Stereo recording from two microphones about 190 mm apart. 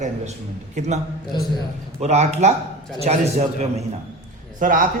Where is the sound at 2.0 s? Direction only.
35° right (ahead or behind).